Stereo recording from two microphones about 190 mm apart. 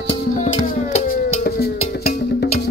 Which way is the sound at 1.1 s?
50° left (ahead or behind).